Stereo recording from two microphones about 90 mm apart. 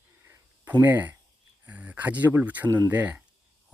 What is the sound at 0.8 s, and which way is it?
Speech, 20° right (ahead or behind).